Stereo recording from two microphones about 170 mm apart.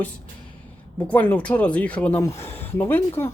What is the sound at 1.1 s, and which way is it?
Speech, 10° left (ahead or behind).